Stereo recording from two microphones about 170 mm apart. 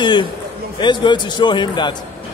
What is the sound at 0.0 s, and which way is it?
A man's voice, 25° left (ahead or behind).